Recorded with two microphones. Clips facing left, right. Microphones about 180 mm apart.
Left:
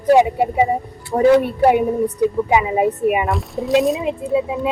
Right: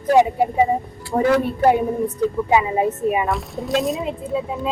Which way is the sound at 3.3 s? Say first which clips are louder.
Left 2 dB; centre (ahead or behind).